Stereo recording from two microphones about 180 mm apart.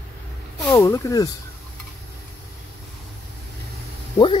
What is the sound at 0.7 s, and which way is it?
Speech, 15° left (ahead or behind).